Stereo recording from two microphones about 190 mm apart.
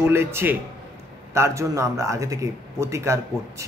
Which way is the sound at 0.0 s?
10° right (ahead or behind).